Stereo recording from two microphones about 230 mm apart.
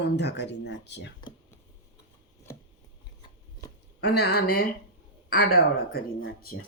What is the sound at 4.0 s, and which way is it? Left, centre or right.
Speech, left.